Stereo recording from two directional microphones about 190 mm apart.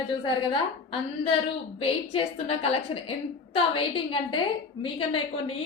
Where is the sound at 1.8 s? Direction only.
30° left (ahead or behind).